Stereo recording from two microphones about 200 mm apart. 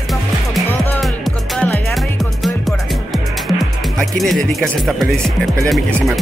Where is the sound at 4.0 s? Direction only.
Centre (ahead or behind).